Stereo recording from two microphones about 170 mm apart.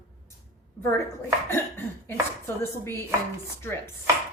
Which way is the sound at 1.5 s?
15° left (ahead or behind).